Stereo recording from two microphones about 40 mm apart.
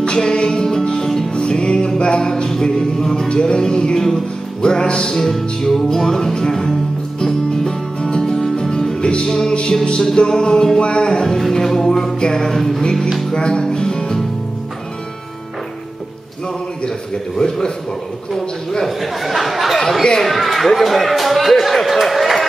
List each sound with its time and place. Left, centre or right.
0.0 s music: left
1.3 s music: left
10.0 s a man's voice: centre
10.8 s music: left
11.1 s a man's voice: centre
12.4 s speech: centre
13.3 s music: centre
16.8 s a man's voice: centre
18.9 s speech: centre